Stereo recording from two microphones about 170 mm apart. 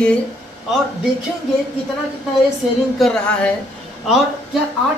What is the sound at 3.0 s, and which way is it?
A woman's voice, 5° left (ahead or behind).